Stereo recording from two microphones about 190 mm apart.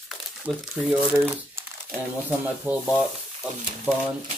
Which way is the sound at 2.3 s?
10° right (ahead or behind).